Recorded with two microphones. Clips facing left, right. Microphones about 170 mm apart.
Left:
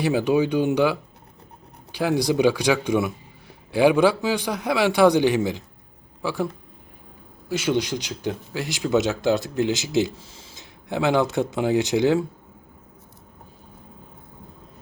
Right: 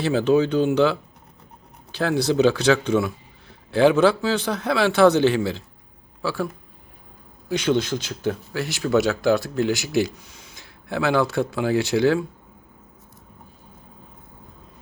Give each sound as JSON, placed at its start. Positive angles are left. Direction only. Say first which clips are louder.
{"t": 0.0, "sound": "a man's voice", "louder": "right 1 dB", "side_deg": 15}
{"t": 7.4, "sound": "speech", "louder": "right 2 dB", "side_deg": 5}